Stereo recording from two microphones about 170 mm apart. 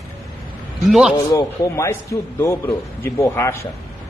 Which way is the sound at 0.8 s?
5° right (ahead or behind).